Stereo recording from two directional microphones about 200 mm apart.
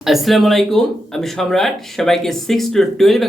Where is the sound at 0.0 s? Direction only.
Centre (ahead or behind).